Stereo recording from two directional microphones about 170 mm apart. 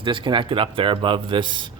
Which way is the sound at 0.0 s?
30° right (ahead or behind).